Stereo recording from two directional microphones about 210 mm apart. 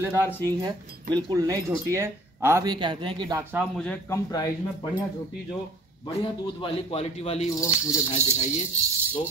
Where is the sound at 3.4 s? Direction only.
10° right (ahead or behind).